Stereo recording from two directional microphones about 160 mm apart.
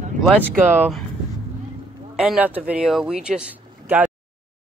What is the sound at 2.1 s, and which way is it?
Speech, 5° right (ahead or behind).